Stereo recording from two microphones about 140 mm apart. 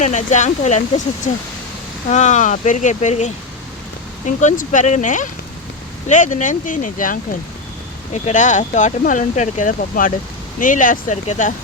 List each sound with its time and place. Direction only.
0.0 s speech: 60° left (ahead or behind)
8.1 s speech: 60° left (ahead or behind)